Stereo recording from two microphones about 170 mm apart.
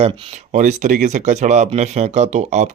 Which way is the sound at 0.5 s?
45° right (ahead or behind).